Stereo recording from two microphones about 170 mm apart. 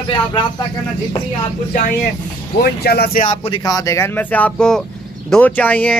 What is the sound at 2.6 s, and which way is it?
Speech, 65° left (ahead or behind).